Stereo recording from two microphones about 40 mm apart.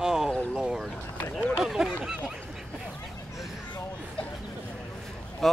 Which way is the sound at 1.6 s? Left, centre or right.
Centre.